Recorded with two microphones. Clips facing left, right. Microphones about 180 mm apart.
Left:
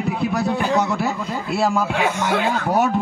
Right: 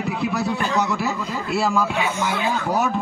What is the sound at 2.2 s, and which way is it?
Speech, 60° left (ahead or behind).